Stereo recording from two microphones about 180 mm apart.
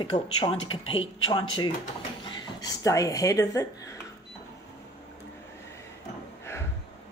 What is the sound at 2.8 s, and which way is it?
Speech, 15° left (ahead or behind).